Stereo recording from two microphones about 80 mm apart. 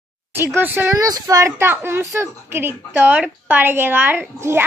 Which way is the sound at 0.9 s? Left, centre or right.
Right.